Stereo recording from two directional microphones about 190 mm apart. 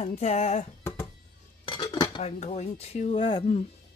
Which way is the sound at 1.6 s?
25° left (ahead or behind).